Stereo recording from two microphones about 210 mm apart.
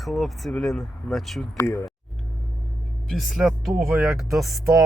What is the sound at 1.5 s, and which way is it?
Speech, 10° left (ahead or behind).